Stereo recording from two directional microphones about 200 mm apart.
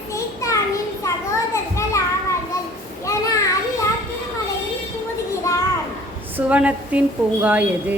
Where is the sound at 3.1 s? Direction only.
15° left (ahead or behind).